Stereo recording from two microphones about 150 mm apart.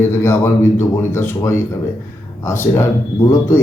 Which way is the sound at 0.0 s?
15° left (ahead or behind).